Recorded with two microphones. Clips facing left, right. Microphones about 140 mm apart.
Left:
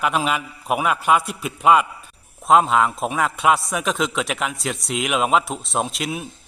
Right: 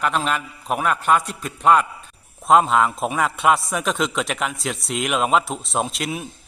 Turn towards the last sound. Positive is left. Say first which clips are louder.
# even
turn(degrees=0)  # may be behind; listen again after turning